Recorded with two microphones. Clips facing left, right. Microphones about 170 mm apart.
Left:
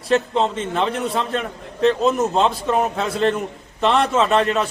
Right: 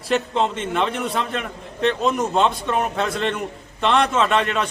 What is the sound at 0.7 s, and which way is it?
A man's voice, centre (ahead or behind).